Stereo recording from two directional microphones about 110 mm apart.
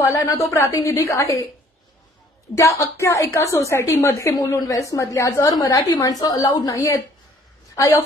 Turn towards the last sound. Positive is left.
turn(degrees=30)  # may be behind; listen again after turning